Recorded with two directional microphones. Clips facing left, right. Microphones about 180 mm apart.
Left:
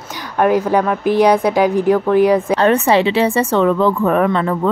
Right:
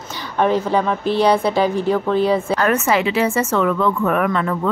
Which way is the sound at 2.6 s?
30° left (ahead or behind).